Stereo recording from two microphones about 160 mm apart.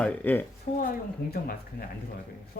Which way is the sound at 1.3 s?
70° left (ahead or behind).